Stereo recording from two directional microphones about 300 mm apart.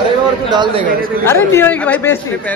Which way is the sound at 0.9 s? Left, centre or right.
Right.